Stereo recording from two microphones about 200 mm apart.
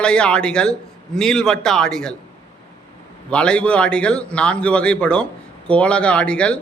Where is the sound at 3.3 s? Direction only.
5° left (ahead or behind).